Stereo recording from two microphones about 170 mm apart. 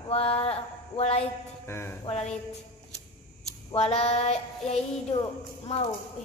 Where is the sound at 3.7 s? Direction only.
40° left (ahead or behind).